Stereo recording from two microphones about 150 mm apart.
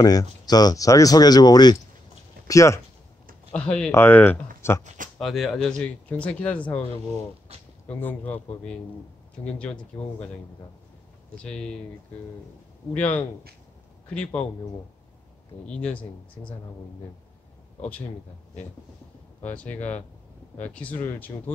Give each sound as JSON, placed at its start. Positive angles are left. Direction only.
{"t": 0.0, "sound": "speech", "side_deg": 25}
{"t": 3.5, "sound": "speech", "side_deg": 5}
{"t": 4.6, "sound": "a sound", "side_deg": 15}
{"t": 4.8, "sound": "speech", "side_deg": -60}
{"t": 5.2, "sound": "speech", "side_deg": 0}
{"t": 8.0, "sound": "speech", "side_deg": 10}
{"t": 11.3, "sound": "speech", "side_deg": 5}
{"t": 12.9, "sound": "a man's voice", "side_deg": 10}
{"t": 15.6, "sound": "speech", "side_deg": 10}
{"t": 19.4, "sound": "speech", "side_deg": 10}